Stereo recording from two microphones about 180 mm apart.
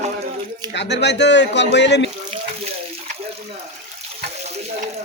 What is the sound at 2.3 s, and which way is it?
Water, 40° right (ahead or behind).